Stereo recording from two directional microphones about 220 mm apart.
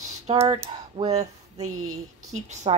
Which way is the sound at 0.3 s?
20° right (ahead or behind).